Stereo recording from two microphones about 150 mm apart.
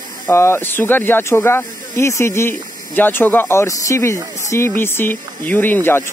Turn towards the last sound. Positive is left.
turn(degrees=15)  # may be behind; listen again after turning